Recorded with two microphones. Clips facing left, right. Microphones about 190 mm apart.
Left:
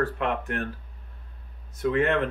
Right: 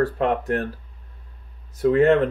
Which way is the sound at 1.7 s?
35° right (ahead or behind).